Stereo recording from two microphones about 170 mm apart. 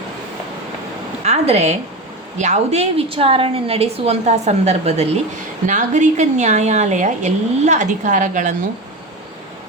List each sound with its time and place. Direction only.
1.2 s a woman's voice: 40° right (ahead or behind)